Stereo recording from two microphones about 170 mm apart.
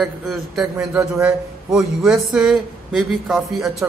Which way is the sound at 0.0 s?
Centre (ahead or behind).